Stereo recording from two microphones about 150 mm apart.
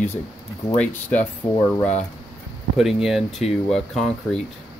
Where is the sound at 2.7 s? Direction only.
Centre (ahead or behind).